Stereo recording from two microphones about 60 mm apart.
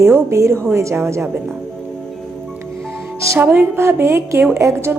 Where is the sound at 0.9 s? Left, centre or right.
Right.